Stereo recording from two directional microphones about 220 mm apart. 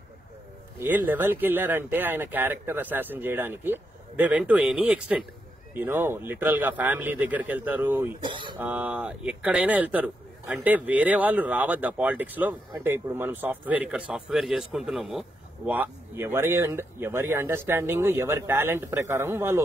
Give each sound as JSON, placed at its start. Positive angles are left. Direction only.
{"t": 0.7, "sound": "speech", "side_deg": -10}
{"t": 8.2, "sound": "speech", "side_deg": -20}
{"t": 8.5, "sound": "speech", "side_deg": -5}